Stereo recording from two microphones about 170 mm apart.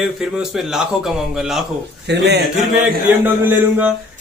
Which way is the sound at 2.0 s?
80° right.